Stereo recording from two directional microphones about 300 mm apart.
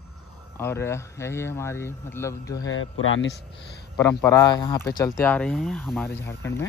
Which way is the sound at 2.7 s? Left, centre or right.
Left.